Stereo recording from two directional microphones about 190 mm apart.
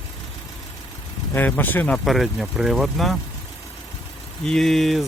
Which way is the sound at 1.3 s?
10° left (ahead or behind).